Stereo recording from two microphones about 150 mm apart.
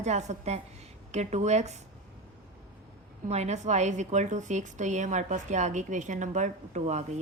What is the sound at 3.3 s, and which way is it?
A woman's voice, 45° right (ahead or behind).